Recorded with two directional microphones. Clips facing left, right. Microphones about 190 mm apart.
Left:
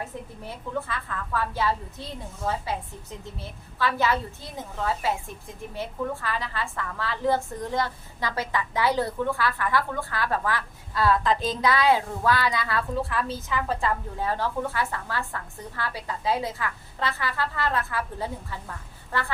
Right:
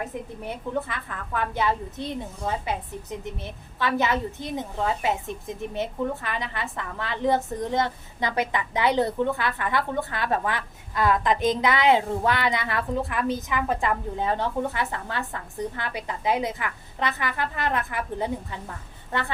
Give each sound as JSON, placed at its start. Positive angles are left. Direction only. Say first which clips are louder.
{"t": 0.4, "sound": "a woman's voice", "louder": "right 2 dB", "side_deg": -20}